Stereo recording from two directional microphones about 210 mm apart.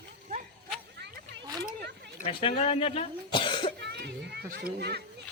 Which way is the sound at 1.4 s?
20° right (ahead or behind).